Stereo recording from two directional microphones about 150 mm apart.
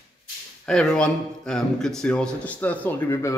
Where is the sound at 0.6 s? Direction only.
5° left (ahead or behind).